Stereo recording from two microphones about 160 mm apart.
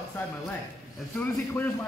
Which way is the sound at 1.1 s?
10° left (ahead or behind).